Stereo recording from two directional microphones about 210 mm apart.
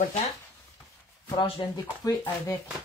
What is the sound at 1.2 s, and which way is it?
Speech, 25° left (ahead or behind).